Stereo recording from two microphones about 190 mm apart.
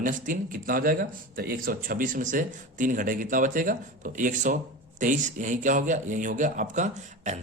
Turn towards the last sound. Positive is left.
turn(degrees=-40)  # may be behind; listen again after turning